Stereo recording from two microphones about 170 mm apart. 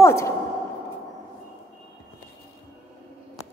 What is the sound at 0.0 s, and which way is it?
Speech, 15° left (ahead or behind).